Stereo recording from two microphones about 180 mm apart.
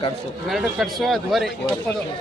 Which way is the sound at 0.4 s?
Centre (ahead or behind).